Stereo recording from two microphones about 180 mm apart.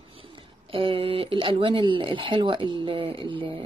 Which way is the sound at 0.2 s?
30° right (ahead or behind).